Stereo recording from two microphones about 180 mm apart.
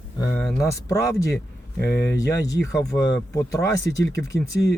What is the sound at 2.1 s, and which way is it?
Speech, 20° left (ahead or behind).